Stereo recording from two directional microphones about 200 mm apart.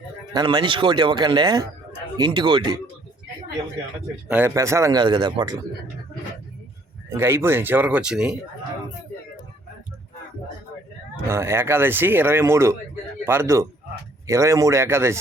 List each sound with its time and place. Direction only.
0.3 s speech: 20° right (ahead or behind)
4.3 s speech: 10° right (ahead or behind)
7.1 s speech: 10° right (ahead or behind)
11.3 s speech: 15° right (ahead or behind)